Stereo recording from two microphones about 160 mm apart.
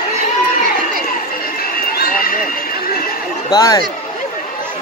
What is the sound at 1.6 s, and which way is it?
Run, 65° left (ahead or behind).